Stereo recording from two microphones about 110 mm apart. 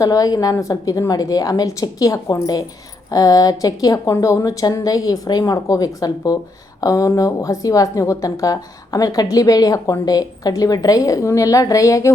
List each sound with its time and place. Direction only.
0.0 s a woman's voice: 35° left (ahead or behind)